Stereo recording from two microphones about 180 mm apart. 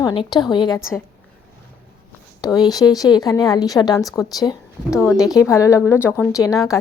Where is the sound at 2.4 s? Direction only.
20° left (ahead or behind).